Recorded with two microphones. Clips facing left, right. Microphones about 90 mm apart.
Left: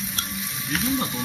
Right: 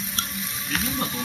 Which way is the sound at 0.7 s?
Centre (ahead or behind).